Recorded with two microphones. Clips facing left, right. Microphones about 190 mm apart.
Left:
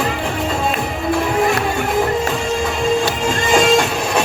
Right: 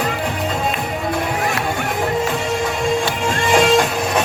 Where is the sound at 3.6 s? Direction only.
25° left (ahead or behind).